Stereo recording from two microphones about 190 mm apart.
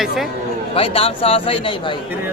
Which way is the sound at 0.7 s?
30° left (ahead or behind).